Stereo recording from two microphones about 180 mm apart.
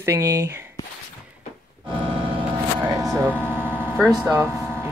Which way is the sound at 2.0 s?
30° right (ahead or behind).